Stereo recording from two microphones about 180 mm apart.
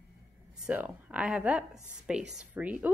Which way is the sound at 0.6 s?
10° right (ahead or behind).